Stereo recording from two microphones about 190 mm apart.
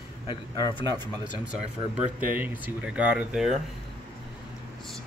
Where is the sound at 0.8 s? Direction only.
20° right (ahead or behind).